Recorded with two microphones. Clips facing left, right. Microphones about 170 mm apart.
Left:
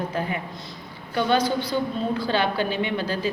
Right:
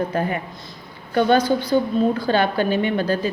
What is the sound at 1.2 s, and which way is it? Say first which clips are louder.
A woman's voice: right 5 dB; 50° right (ahead or behind).